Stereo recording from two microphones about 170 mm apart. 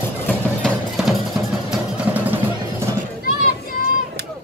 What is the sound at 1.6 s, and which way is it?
Vehicle, 5° right (ahead or behind).